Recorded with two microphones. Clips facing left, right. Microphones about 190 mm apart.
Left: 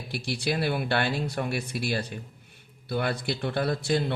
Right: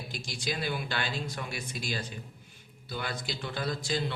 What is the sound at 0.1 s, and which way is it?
Speech, 65° left (ahead or behind).